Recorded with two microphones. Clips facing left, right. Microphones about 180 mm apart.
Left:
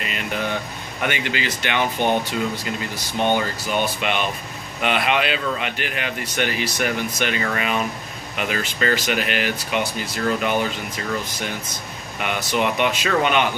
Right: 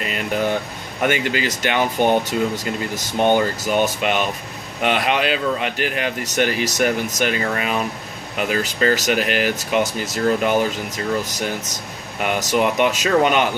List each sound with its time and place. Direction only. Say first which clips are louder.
1.0 s speech: right 5 dB; 45° right (ahead or behind)
12.2 s speech: right 4 dB; 40° right (ahead or behind)